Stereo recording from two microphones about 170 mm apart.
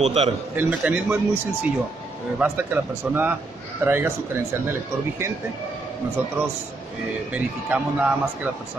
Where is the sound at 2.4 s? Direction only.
10° right (ahead or behind).